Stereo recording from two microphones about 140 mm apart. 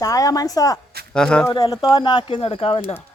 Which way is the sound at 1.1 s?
5° left (ahead or behind).